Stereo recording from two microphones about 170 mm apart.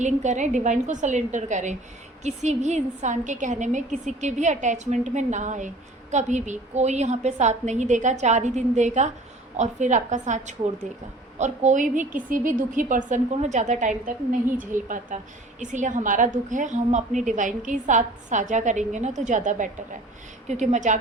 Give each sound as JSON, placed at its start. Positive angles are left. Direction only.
{"t": 0.0, "sound": "a woman's voice", "side_deg": -45}